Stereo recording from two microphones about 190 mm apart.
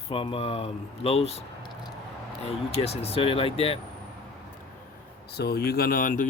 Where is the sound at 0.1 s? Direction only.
30° left (ahead or behind).